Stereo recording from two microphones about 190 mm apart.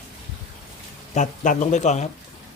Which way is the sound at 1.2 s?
40° left (ahead or behind).